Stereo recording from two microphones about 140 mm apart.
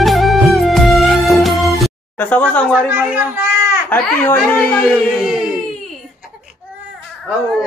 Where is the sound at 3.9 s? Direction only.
15° left (ahead or behind).